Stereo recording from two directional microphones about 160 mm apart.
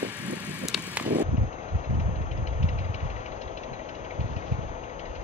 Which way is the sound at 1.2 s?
45° left (ahead or behind).